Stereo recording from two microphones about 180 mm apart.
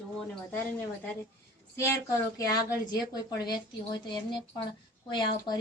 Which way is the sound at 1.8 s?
15° left (ahead or behind).